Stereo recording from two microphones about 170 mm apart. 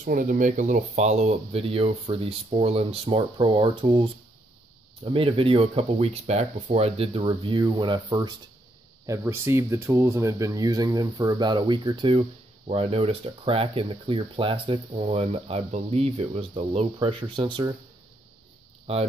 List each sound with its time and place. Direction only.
0.0 s speech: 50° right (ahead or behind); by 17.6 s 30° right (ahead or behind)